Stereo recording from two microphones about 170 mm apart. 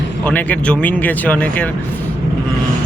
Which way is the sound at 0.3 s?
10° left (ahead or behind).